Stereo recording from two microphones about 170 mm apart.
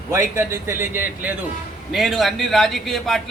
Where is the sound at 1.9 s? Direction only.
Centre (ahead or behind).